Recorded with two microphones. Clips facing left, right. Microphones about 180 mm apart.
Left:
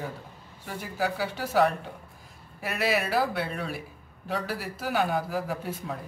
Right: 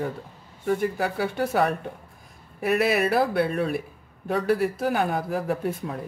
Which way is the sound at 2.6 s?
55° right (ahead or behind).